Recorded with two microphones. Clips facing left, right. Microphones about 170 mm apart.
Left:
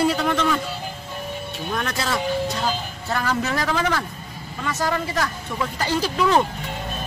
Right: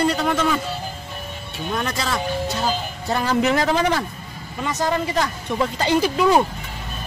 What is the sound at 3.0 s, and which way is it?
Speech, 20° right (ahead or behind).